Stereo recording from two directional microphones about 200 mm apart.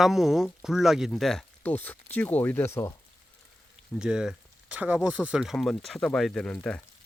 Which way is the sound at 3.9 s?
5° right (ahead or behind).